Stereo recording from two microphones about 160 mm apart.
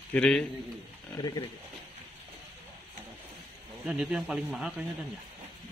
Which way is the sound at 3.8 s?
5° right (ahead or behind).